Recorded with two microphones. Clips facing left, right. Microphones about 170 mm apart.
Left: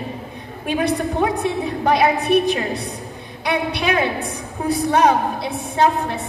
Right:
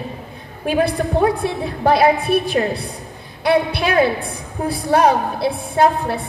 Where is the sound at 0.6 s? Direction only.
35° right (ahead or behind).